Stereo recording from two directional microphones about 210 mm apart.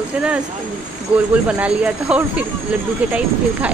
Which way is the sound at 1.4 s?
5° right (ahead or behind).